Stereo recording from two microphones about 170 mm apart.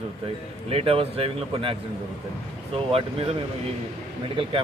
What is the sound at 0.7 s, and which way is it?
Speech, 35° right (ahead or behind).